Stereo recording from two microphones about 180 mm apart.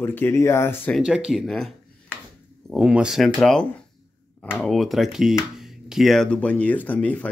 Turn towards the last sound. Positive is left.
turn(degrees=5)  # may be behind; listen again after turning